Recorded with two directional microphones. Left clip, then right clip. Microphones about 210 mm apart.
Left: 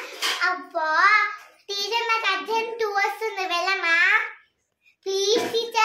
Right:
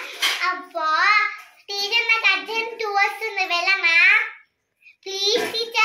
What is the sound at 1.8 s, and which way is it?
Child singing, 15° left (ahead or behind).